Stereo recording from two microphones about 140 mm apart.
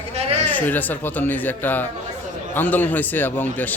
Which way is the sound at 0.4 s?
10° left (ahead or behind).